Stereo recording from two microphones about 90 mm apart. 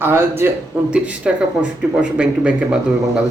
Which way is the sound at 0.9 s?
10° right (ahead or behind).